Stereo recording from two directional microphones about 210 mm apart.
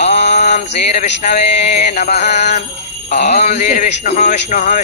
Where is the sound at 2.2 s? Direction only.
55° left (ahead or behind).